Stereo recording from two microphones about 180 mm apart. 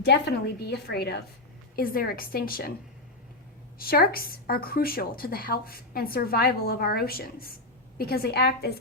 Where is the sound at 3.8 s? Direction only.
55° left (ahead or behind).